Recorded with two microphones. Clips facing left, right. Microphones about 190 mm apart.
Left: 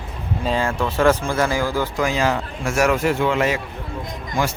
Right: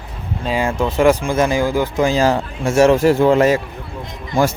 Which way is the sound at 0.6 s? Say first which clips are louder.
Right 5 dB; 15° right (ahead or behind).